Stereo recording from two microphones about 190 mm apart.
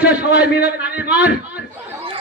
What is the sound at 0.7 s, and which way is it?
Speech, 10° right (ahead or behind).